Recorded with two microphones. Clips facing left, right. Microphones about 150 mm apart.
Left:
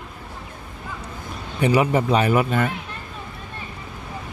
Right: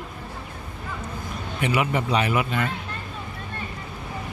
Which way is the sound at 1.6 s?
35° left (ahead or behind).